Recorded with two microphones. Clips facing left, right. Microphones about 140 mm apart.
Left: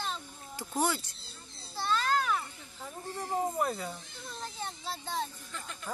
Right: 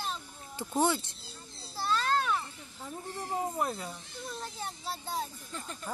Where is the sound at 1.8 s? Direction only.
Centre (ahead or behind).